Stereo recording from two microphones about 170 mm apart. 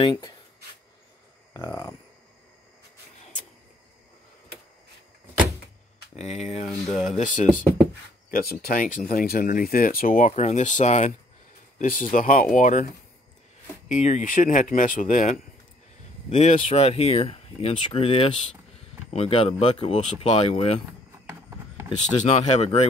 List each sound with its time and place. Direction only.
0.0 s speech: 30° left (ahead or behind)
1.5 s speech: 25° left (ahead or behind)
6.1 s speech: 40° left (ahead or behind)
6.7 s speech: centre (ahead or behind)
7.1 s speech: 50° left (ahead or behind)
8.3 s speech: 60° left (ahead or behind); by 20.8 s 35° left (ahead or behind)
22.2 s speech: 40° left (ahead or behind)